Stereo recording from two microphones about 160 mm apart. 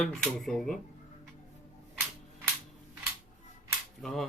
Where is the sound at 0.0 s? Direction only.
5° left (ahead or behind).